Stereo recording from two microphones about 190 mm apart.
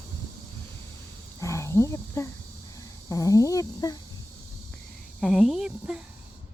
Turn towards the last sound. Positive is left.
turn(degrees=-5)  # may be behind; listen again after turning